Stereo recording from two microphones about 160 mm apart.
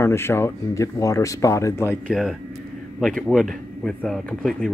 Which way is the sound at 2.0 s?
Centre (ahead or behind).